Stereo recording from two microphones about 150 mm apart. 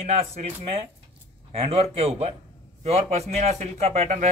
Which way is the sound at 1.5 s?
40° right (ahead or behind).